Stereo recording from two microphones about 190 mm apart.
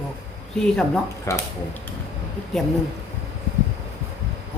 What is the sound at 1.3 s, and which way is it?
Speech, 15° left (ahead or behind).